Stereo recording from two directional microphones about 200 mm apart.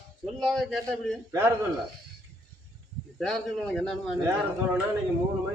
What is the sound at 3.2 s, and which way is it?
Speech, centre (ahead or behind).